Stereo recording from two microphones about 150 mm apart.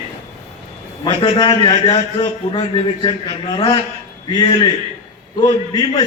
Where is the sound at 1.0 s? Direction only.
30° left (ahead or behind).